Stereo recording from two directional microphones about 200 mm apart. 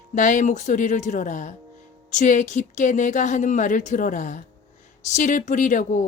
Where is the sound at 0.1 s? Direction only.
40° left (ahead or behind).